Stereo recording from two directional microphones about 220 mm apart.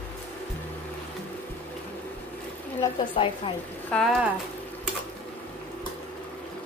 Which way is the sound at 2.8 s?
20° left (ahead or behind).